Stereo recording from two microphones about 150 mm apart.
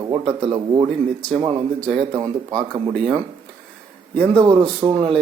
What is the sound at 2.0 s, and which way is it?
Speech, 30° right (ahead or behind).